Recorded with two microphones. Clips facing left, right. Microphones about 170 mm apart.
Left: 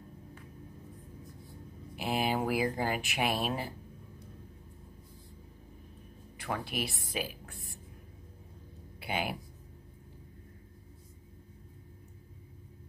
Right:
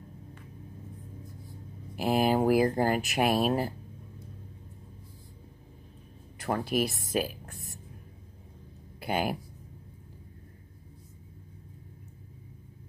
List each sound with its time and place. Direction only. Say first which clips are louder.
2.0 s speech: right 6 dB; 45° right (ahead or behind)
6.3 s speech: right 7 dB; 45° right (ahead or behind)
9.0 s speech: right 5 dB; 45° right (ahead or behind)